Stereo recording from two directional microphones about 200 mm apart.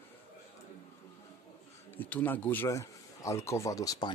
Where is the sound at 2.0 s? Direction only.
10° left (ahead or behind).